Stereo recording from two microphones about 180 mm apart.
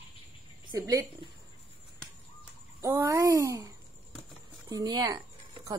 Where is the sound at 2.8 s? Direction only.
15° right (ahead or behind).